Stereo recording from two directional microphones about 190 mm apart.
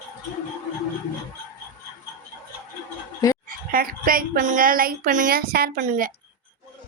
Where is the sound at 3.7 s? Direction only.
50° right (ahead or behind).